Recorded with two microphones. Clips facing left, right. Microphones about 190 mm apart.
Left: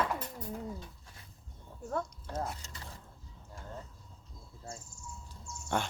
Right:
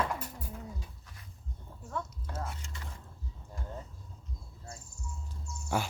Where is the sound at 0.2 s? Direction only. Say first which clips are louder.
Left 3 dB; 10° right (ahead or behind).